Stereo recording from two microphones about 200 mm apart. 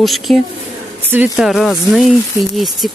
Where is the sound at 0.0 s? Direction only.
Centre (ahead or behind).